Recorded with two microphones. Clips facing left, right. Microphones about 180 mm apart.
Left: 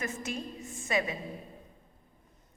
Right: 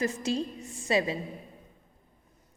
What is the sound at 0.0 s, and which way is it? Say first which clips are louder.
A woman's voice: right 7 dB; 30° right (ahead or behind).